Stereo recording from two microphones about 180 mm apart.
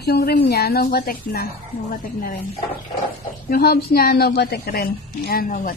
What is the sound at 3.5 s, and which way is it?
A woman's voice, 60° left (ahead or behind).